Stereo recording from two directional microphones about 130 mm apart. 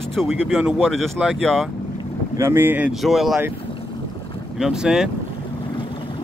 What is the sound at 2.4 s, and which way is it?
Speech, 20° right (ahead or behind).